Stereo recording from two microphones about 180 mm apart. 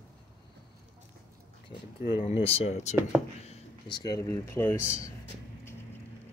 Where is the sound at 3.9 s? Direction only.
20° left (ahead or behind).